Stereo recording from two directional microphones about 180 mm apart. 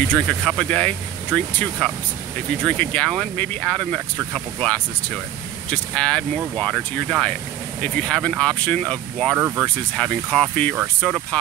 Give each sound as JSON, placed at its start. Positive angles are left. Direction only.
{"t": 0.1, "sound": "speech", "side_deg": 5}